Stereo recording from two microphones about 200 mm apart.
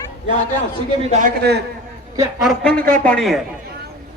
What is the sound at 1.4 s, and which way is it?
Speech, 55° right (ahead or behind).